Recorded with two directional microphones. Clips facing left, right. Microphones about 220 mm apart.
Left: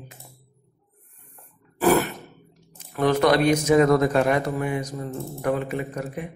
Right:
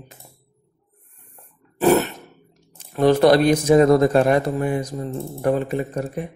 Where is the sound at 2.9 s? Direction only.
30° right (ahead or behind).